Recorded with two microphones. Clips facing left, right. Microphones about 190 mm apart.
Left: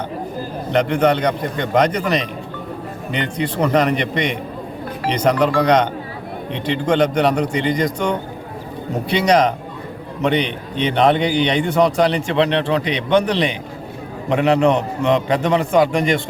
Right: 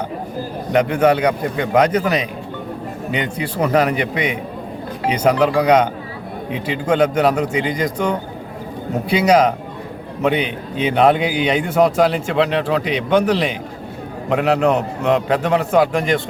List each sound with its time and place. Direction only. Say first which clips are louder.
0.7 s a man's voice: right 1 dB; 10° right (ahead or behind)